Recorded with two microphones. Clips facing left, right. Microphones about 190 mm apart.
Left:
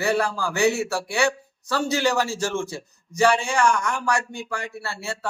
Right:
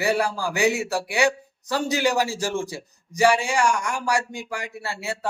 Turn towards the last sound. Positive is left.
turn(degrees=-15)  # may be behind; listen again after turning